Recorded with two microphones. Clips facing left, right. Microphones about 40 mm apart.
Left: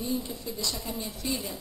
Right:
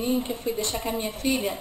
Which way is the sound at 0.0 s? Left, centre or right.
Right.